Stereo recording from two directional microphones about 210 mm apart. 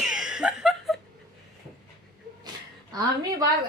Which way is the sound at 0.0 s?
Centre (ahead or behind).